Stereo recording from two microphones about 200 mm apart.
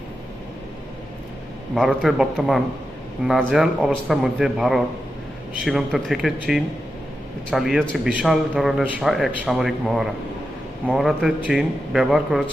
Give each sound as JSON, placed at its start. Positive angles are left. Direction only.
{"t": 1.7, "sound": "a man's voice", "side_deg": 0}